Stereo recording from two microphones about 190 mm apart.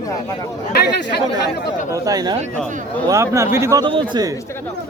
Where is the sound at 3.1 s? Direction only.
15° right (ahead or behind).